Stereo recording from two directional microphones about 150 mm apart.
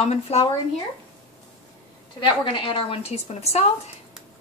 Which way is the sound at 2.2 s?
30° left (ahead or behind).